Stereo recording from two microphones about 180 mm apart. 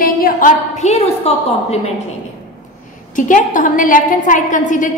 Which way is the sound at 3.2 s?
45° left (ahead or behind).